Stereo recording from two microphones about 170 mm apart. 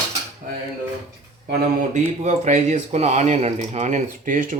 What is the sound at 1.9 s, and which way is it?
Speech, 45° right (ahead or behind).